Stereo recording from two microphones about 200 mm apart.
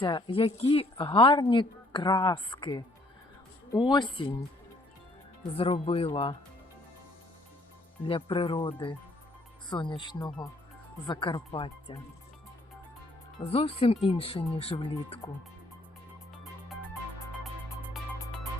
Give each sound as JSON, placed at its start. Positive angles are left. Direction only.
{"t": 0.0, "sound": "a woman's voice", "side_deg": 25}
{"t": 5.5, "sound": "a woman's voice", "side_deg": 30}
{"t": 8.0, "sound": "a woman's voice", "side_deg": 25}
{"t": 13.4, "sound": "a woman's voice", "side_deg": 30}
{"t": 16.3, "sound": "music", "side_deg": 0}